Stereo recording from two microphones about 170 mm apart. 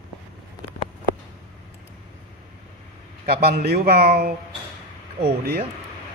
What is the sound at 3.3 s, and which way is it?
Speech, 70° right (ahead or behind).